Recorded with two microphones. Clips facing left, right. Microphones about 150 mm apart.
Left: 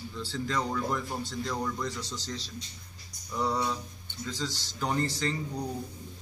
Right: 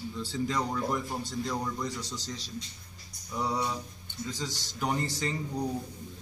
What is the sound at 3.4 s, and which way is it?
Speech, 5° right (ahead or behind).